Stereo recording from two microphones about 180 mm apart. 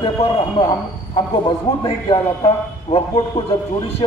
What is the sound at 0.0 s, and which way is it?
A man's voice, 25° left (ahead or behind).